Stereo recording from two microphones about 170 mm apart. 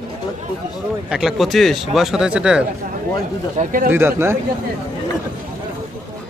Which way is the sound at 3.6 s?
50° right (ahead or behind).